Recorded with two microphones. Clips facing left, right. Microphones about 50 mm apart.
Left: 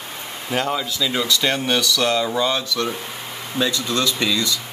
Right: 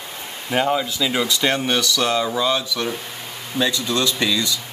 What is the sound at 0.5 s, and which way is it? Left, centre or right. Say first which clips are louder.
Speech: right 3 dB; centre.